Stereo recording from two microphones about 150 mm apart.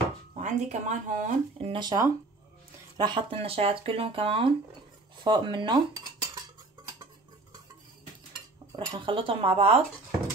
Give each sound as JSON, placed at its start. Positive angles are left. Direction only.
{"t": 0.4, "sound": "speech", "side_deg": -55}
{"t": 1.7, "sound": "speech", "side_deg": -30}
{"t": 8.7, "sound": "speech", "side_deg": -35}